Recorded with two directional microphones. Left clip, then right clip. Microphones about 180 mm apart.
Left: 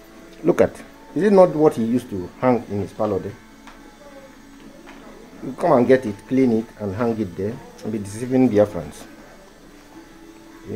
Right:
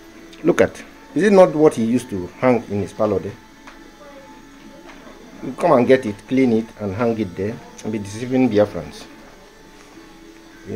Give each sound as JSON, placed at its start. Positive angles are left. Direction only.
{"t": 0.5, "sound": "speech", "side_deg": 0}
{"t": 1.1, "sound": "speech", "side_deg": -20}
{"t": 5.6, "sound": "speech", "side_deg": -15}
{"t": 8.0, "sound": "speech", "side_deg": 0}